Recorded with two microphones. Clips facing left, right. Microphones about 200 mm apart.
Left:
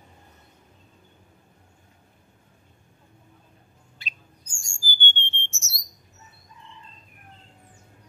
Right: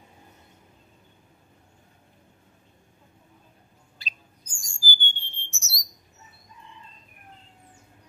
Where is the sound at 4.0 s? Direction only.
35° right (ahead or behind).